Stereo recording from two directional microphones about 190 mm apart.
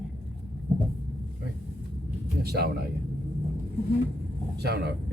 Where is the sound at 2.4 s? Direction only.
55° right (ahead or behind).